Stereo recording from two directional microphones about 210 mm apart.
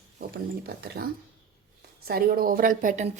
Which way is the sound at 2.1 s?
45° right (ahead or behind).